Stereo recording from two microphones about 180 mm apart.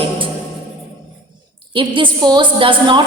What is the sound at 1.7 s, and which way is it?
A woman's voice, 25° right (ahead or behind).